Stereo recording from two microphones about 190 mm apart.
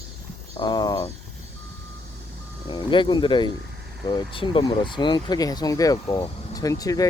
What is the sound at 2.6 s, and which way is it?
Speech, 25° left (ahead or behind).